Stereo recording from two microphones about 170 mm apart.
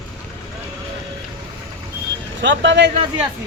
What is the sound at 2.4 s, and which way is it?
Speech, 90° right.